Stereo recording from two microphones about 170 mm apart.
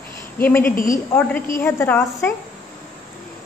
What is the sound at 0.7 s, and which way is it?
Speech, 50° left (ahead or behind).